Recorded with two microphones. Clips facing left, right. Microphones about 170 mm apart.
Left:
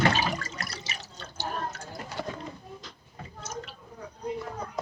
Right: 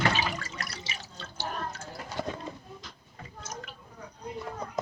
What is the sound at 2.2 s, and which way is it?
Bird, 20° right (ahead or behind).